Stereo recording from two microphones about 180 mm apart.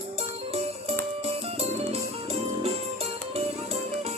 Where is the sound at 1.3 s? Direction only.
35° right (ahead or behind).